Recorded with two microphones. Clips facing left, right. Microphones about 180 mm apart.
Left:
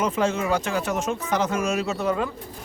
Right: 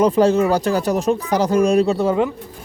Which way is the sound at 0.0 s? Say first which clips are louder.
Right 9 dB; 35° right (ahead or behind).